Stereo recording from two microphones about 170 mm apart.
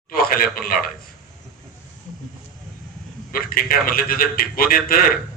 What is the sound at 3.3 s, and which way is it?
A man's voice, 60° left (ahead or behind).